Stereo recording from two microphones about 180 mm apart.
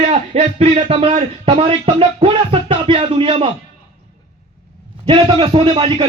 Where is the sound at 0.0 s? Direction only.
40° right (ahead or behind).